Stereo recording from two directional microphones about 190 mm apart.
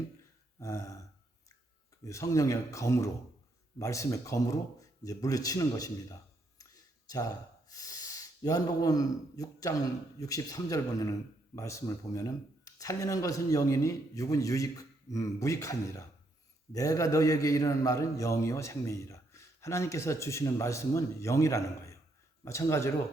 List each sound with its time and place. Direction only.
0.6 s a man's voice: 15° left (ahead or behind)
2.0 s a man's voice: 15° left (ahead or behind)
6.6 s a sound: 20° left (ahead or behind)
7.7 s a man's voice: 20° left (ahead or behind)